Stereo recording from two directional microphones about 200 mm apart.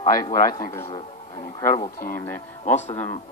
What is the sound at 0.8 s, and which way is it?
Music, 25° left (ahead or behind).